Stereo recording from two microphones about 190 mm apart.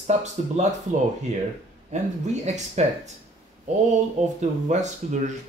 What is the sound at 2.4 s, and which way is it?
Speech, 35° right (ahead or behind).